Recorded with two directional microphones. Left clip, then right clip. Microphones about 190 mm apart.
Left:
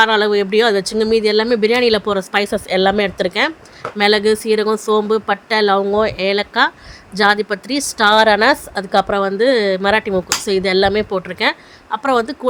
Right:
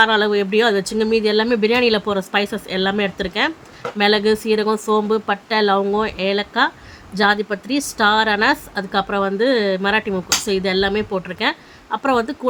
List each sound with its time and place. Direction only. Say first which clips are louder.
0.0 s speech: left 2 dB; 20° left (ahead or behind)